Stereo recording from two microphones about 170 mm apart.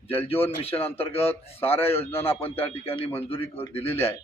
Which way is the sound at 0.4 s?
35° left (ahead or behind).